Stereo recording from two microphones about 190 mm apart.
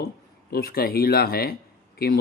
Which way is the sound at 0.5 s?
55° left (ahead or behind).